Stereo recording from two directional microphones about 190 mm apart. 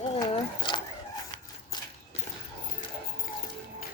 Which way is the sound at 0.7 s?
25° left (ahead or behind).